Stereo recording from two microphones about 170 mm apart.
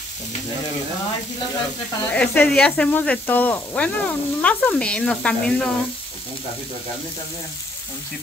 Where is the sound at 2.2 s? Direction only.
5° left (ahead or behind).